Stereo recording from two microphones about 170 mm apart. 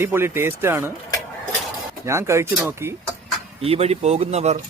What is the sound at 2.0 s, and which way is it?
Speech, 15° right (ahead or behind).